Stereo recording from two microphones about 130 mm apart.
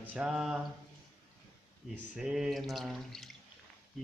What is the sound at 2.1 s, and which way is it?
Speech, 5° right (ahead or behind).